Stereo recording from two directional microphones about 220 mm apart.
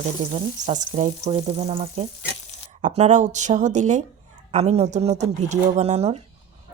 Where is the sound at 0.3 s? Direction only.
35° right (ahead or behind).